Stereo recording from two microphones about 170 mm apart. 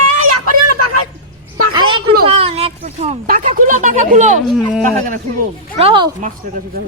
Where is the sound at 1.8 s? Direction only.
30° right (ahead or behind).